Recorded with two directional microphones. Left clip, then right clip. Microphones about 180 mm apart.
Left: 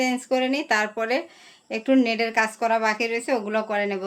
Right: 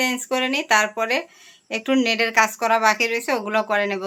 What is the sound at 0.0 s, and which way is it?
A woman's voice, centre (ahead or behind).